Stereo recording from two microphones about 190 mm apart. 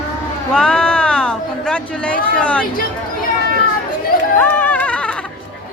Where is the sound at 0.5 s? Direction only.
5° left (ahead or behind).